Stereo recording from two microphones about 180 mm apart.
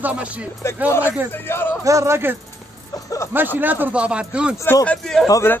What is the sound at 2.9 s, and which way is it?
Speech, 20° left (ahead or behind).